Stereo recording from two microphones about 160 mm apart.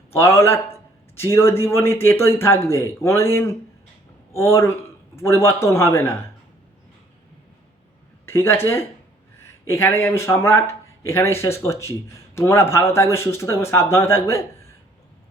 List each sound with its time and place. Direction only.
0.1 s a man's voice: 15° left (ahead or behind)
8.3 s a man's voice: 15° left (ahead or behind)